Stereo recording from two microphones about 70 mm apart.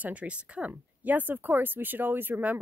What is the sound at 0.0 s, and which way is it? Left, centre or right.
Speech, centre.